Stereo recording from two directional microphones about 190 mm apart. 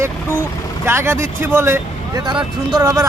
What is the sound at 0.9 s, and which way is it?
A man's voice, 15° right (ahead or behind).